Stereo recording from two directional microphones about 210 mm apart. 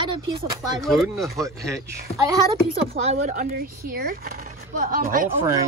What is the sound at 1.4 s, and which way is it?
Speech, 15° right (ahead or behind).